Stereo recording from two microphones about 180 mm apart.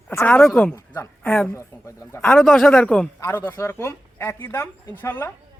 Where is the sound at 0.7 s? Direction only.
15° left (ahead or behind).